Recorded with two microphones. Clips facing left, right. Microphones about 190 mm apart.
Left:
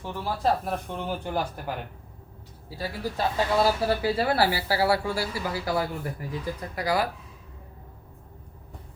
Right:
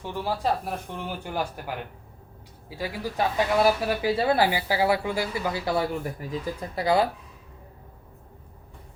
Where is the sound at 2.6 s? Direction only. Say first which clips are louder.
Even; 15° right (ahead or behind).